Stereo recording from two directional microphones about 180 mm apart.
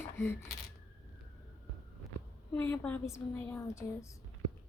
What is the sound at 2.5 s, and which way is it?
Speech, 10° left (ahead or behind).